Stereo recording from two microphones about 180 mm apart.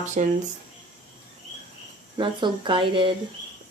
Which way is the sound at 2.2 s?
30° right (ahead or behind).